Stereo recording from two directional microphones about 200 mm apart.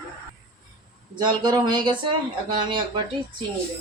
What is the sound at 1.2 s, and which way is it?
Speech, 20° right (ahead or behind).